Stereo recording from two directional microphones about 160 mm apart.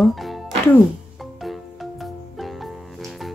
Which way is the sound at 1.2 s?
Centre (ahead or behind).